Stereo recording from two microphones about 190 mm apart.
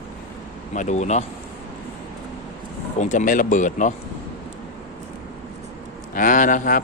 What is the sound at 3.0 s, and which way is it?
Speech, 40° left (ahead or behind).